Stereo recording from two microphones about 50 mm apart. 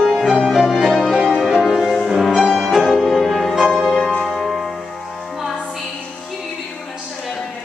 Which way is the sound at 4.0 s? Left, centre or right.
Left.